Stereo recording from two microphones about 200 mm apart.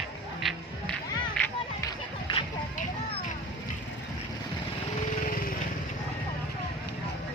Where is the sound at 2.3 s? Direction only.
25° left (ahead or behind).